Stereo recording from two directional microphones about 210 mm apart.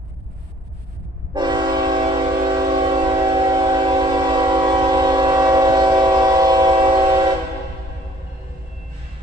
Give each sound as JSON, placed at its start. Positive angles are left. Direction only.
{"t": 1.3, "sound": "train", "side_deg": -20}